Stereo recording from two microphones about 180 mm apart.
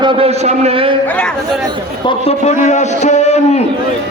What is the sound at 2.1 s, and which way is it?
A man's voice, 35° left (ahead or behind).